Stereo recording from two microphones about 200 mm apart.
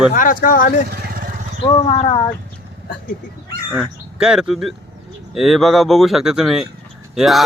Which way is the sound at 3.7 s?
5° right (ahead or behind).